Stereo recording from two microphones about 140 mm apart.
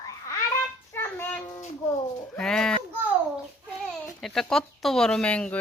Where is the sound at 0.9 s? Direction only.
15° left (ahead or behind).